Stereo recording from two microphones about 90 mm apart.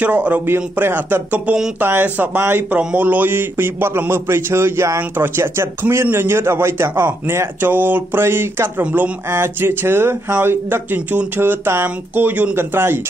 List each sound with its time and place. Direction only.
0.0 s a man's voice: 15° right (ahead or behind)